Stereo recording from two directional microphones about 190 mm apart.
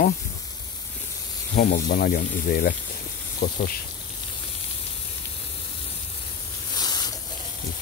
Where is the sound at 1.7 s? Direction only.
45° left (ahead or behind).